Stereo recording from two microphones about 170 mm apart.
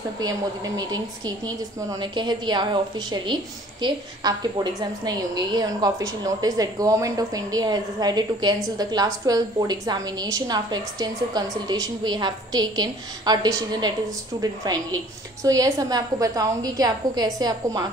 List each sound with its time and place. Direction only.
0.7 s a woman's voice: 25° right (ahead or behind)